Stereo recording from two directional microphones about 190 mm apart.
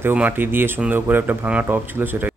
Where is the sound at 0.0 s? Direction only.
10° right (ahead or behind).